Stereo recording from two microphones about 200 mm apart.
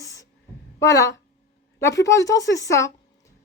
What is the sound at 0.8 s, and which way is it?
Speech, 15° left (ahead or behind).